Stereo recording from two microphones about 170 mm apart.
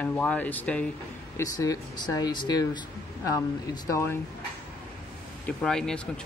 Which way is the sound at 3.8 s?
15° left (ahead or behind).